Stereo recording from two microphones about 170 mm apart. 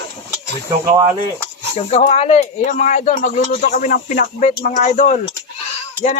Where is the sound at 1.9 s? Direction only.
35° left (ahead or behind).